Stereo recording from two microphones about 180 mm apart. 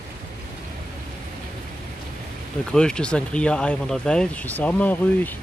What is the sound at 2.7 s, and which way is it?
Speech, 5° left (ahead or behind).